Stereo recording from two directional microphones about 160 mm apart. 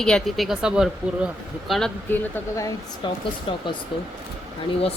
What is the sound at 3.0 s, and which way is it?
Speech, 30° left (ahead or behind).